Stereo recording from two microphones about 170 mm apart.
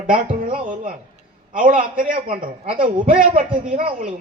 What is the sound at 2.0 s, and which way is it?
Speech, 60° right (ahead or behind).